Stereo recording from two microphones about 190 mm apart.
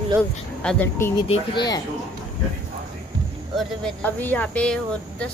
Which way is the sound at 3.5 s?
5° left (ahead or behind).